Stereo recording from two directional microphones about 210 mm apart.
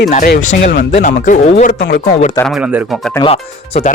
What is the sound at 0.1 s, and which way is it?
Speech, 40° left (ahead or behind).